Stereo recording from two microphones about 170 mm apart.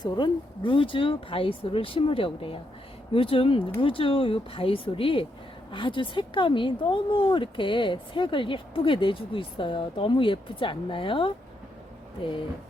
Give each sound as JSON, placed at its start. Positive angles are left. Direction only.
{"t": 0.0, "sound": "speech", "side_deg": 30}